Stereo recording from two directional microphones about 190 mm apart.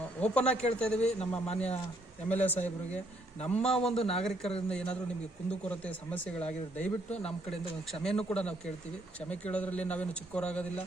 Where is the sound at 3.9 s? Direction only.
30° left (ahead or behind).